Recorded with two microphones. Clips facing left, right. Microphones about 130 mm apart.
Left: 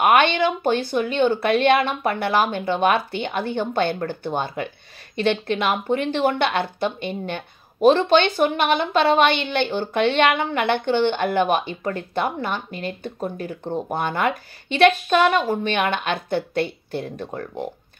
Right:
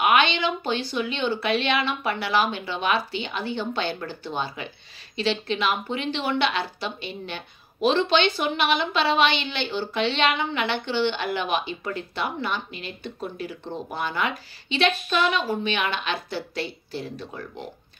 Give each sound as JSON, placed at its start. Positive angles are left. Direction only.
{"t": 0.0, "sound": "speech", "side_deg": 50}